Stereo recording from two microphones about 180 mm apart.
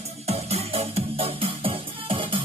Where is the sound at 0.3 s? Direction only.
35° right (ahead or behind).